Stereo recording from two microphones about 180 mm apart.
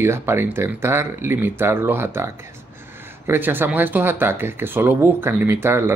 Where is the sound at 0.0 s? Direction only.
15° right (ahead or behind).